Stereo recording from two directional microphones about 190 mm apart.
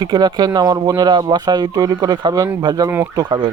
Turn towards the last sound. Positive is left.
turn(degrees=-20)  # may be behind; listen again after turning